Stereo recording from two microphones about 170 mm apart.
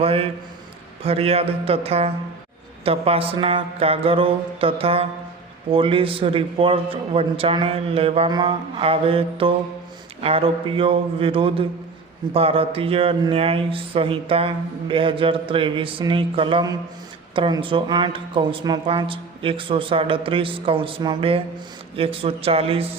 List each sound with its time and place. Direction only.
0.0 s speech: 35° right (ahead or behind)